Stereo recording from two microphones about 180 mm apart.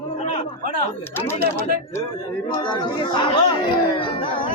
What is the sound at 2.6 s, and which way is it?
Speech, 25° left (ahead or behind).